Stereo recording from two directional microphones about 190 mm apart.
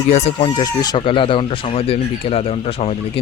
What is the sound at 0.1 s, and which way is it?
Speech, 35° left (ahead or behind).